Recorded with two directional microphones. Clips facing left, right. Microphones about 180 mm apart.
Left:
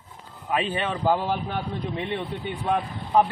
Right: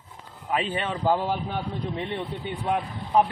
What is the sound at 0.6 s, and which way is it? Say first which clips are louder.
Speech: left 2 dB; 5° left (ahead or behind).